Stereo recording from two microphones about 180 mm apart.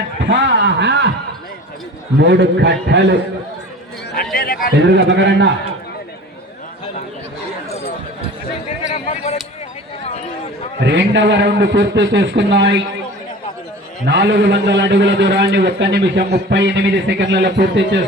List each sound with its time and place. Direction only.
0.2 s a man's voice: 75° right (ahead or behind)
2.1 s a man's voice: 75° right (ahead or behind)
4.4 s chatter: 55° left (ahead or behind)
4.7 s a man's voice: 75° right (ahead or behind)
10.8 s a man's voice: 75° right (ahead or behind)
14.1 s a man's voice: 75° right (ahead or behind)